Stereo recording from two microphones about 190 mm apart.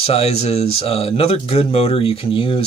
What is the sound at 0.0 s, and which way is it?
Speech, 30° left (ahead or behind).